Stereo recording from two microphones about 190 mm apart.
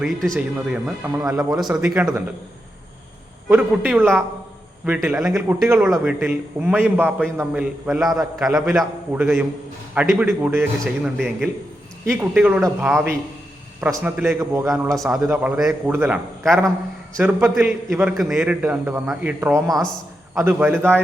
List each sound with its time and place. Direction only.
0.0 s a man's voice: centre (ahead or behind)
3.5 s a man's voice: 5° right (ahead or behind)
5.3 s a man's voice: 15° right (ahead or behind)
14.9 s a man's voice: centre (ahead or behind)